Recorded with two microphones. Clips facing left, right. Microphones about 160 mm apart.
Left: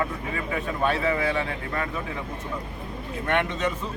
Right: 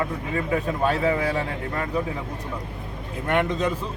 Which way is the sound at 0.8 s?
35° right (ahead or behind).